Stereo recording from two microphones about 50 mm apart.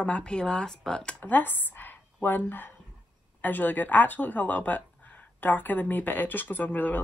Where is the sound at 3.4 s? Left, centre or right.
Left.